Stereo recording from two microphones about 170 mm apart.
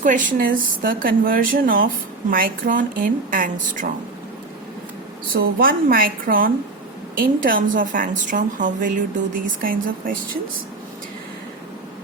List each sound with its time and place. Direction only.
0.0 s a woman's voice: 50° right (ahead or behind)
5.3 s a woman's voice: 60° right (ahead or behind)